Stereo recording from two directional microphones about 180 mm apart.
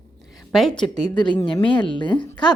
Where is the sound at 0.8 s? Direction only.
25° left (ahead or behind).